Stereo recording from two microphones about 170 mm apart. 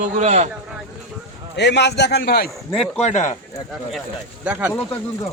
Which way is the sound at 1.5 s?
90° left.